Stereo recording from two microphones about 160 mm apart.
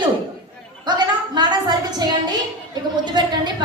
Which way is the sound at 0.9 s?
30° right (ahead or behind).